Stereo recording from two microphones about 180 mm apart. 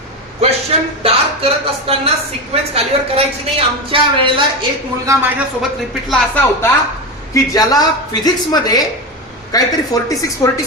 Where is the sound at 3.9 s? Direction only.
30° right (ahead or behind).